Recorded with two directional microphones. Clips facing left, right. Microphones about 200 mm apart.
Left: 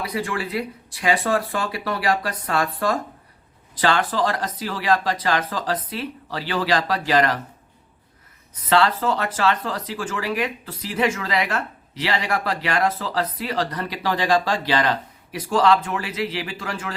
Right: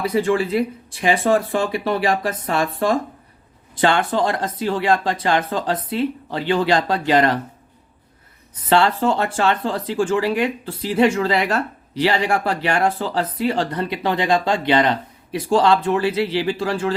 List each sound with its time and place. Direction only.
0.0 s speech: 25° right (ahead or behind)
8.7 s speech: 30° right (ahead or behind)